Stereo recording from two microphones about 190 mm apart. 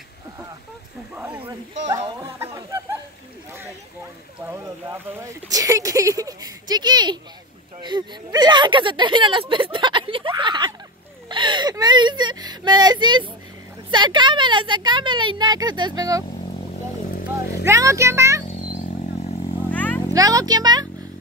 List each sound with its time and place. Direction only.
1.1 s speech: 10° right (ahead or behind)
2.1 s a sound: 15° right (ahead or behind)
4.5 s speech: 15° right (ahead or behind)
17.6 s speech: 15° right (ahead or behind)
19.7 s a sound: 10° left (ahead or behind)
20.2 s speech: 20° right (ahead or behind)